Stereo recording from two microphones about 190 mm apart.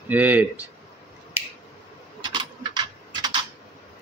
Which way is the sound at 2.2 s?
25° right (ahead or behind).